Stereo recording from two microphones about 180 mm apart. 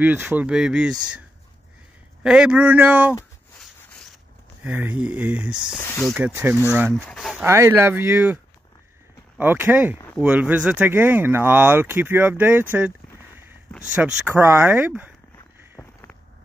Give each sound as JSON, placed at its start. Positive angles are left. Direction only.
{"t": 0.0, "sound": "speech", "side_deg": -10}
{"t": 2.2, "sound": "speech", "side_deg": -5}
{"t": 4.6, "sound": "speech", "side_deg": -10}
{"t": 5.8, "sound": "speech", "side_deg": 15}
{"t": 6.1, "sound": "speech", "side_deg": -10}
{"t": 7.3, "sound": "speech", "side_deg": -15}
{"t": 9.4, "sound": "speech", "side_deg": -10}
{"t": 14.0, "sound": "speech", "side_deg": -5}
{"t": 15.8, "sound": "a sound", "side_deg": 15}